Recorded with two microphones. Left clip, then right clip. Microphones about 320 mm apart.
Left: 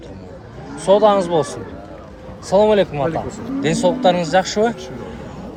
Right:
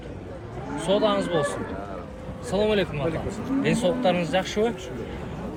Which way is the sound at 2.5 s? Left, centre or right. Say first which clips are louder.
Left 10 dB; centre.